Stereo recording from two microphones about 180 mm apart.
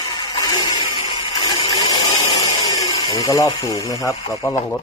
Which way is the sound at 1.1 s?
30° left (ahead or behind).